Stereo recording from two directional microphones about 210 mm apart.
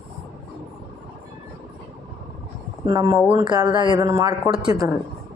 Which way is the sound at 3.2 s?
5° right (ahead or behind).